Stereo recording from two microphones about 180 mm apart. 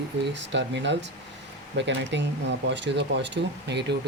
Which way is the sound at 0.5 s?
80° right.